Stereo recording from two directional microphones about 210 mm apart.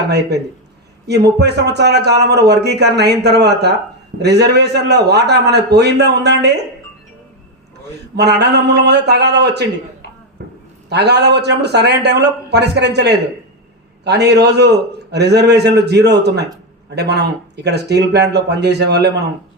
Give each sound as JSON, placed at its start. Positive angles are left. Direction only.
{"t": 1.0, "sound": "a man's voice", "side_deg": -50}
{"t": 8.1, "sound": "a man's voice", "side_deg": -50}
{"t": 10.8, "sound": "a man's voice", "side_deg": -50}